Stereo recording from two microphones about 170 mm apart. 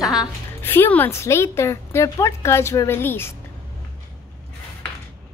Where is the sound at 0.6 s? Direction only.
10° left (ahead or behind).